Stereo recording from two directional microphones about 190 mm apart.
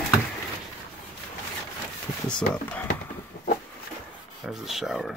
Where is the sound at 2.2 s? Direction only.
5° left (ahead or behind).